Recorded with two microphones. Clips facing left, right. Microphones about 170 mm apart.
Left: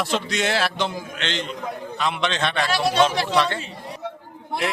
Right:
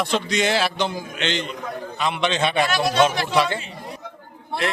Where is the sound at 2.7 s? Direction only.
30° left (ahead or behind).